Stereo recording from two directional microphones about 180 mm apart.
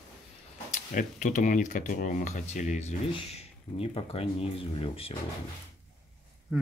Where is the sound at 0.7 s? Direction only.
45° left (ahead or behind).